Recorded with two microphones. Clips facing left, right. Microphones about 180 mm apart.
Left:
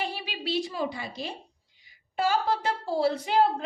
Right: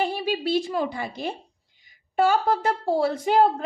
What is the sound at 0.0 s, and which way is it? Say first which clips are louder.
A woman's voice: right 8 dB; 45° right (ahead or behind).